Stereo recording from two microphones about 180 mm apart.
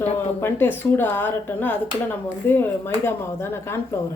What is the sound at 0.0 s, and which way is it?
Speech, 10° left (ahead or behind).